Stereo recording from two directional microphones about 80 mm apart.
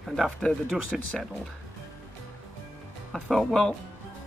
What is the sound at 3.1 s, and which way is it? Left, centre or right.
Speech, centre.